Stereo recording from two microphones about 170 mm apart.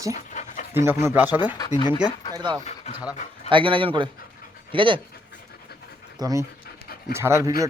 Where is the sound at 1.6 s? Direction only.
30° left (ahead or behind).